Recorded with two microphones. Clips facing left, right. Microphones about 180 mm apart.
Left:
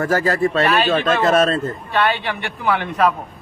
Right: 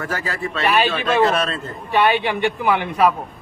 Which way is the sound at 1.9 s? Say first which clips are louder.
Right 4 dB; 15° right (ahead or behind).